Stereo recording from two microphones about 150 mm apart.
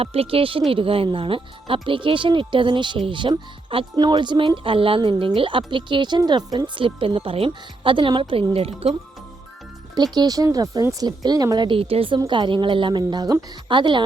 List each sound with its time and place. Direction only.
0.0 s speech: 40° right (ahead or behind)
9.9 s speech: 30° right (ahead or behind)